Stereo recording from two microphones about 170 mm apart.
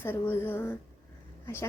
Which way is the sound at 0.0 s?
10° left (ahead or behind).